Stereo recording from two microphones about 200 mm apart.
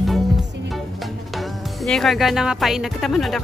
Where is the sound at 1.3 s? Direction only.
Centre (ahead or behind).